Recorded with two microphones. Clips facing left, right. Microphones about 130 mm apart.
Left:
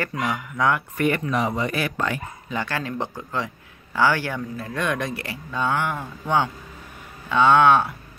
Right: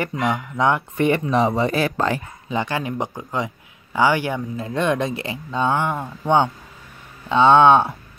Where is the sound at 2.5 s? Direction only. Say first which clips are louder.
Right 4 dB; 20° right (ahead or behind).